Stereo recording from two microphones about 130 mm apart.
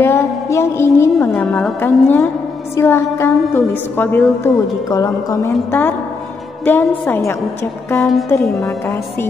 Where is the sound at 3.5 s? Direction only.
15° left (ahead or behind).